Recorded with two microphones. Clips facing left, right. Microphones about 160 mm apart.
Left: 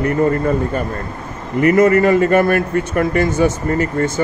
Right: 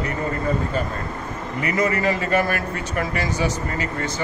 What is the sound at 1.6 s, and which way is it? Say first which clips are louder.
A man's voice: left 10 dB; 50° left (ahead or behind).